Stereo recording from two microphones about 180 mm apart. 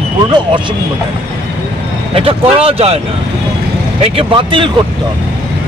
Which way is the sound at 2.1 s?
30° right (ahead or behind).